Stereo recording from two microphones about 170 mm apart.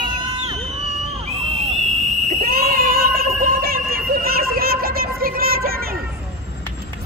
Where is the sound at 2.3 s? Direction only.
60° right (ahead or behind).